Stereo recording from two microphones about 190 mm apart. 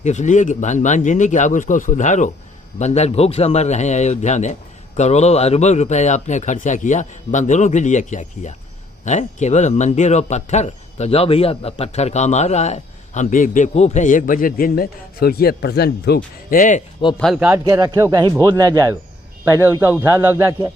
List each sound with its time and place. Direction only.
0.0 s a man's voice: 40° left (ahead or behind)
17.2 s speech: centre (ahead or behind)
17.5 s a man's voice: 15° right (ahead or behind)